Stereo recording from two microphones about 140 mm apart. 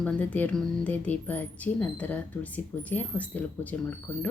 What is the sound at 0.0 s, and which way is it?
A woman's voice, 10° left (ahead or behind).